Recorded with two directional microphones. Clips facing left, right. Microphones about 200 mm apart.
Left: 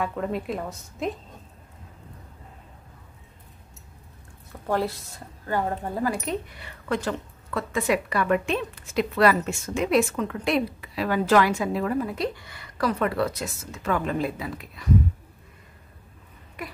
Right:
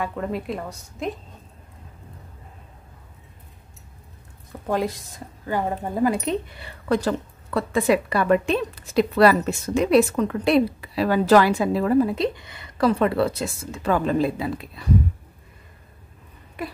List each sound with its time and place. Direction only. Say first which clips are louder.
0.0 s a woman's voice: right 1 dB; centre (ahead or behind)
4.6 s a woman's voice: right 2 dB; 15° right (ahead or behind)